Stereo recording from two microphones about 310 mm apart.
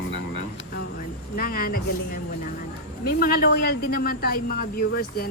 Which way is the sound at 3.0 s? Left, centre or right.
Left.